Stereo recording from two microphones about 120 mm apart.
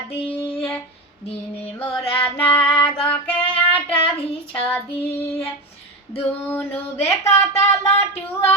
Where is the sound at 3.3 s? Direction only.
50° left (ahead or behind).